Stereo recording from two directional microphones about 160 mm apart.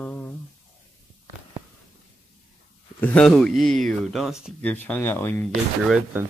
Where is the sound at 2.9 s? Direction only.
10° left (ahead or behind).